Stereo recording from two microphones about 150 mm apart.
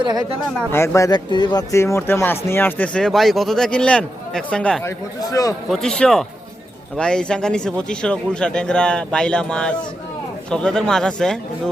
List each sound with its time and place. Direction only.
0.0 s speech: 25° right (ahead or behind)
0.7 s speech: 20° left (ahead or behind)
1.7 s speech: 20° left (ahead or behind)
4.8 s speech: 20° left (ahead or behind)
5.7 s speech: 5° left (ahead or behind)